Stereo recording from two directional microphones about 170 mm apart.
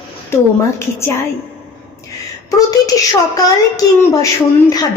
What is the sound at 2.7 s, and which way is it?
A woman's voice, 20° left (ahead or behind).